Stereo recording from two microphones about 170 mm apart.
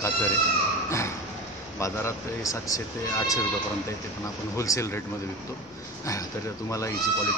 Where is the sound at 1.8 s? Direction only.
20° left (ahead or behind).